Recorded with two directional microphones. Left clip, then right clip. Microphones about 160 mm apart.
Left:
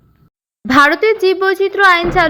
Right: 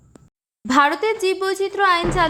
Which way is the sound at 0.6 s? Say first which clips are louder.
Left 7 dB; 15° left (ahead or behind).